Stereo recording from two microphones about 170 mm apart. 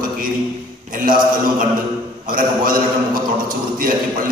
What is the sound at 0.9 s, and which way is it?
A man's voice, 55° right (ahead or behind).